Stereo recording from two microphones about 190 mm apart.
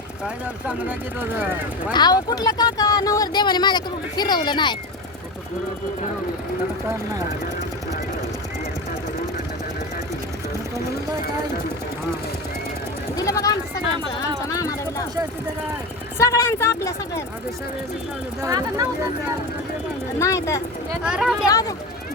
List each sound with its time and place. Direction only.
0.7 s speech: 10° right (ahead or behind)
1.9 s speech: 20° left (ahead or behind)
13.1 s speech: 20° left (ahead or behind)
16.1 s speech: 15° left (ahead or behind)
18.4 s speech: 20° right (ahead or behind)
20.1 s speech: 15° left (ahead or behind)
21.0 s speech: 5° right (ahead or behind)
21.4 s speech: 20° left (ahead or behind)